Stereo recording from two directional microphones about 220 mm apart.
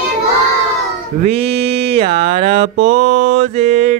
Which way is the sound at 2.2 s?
30° right (ahead or behind).